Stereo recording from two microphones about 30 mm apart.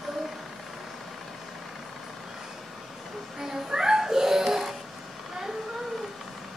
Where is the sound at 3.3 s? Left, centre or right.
Centre.